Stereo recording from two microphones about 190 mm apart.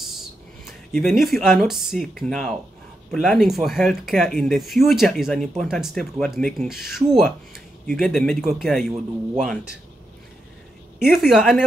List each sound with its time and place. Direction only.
0.0 s speech: centre (ahead or behind)
11.0 s speech: centre (ahead or behind)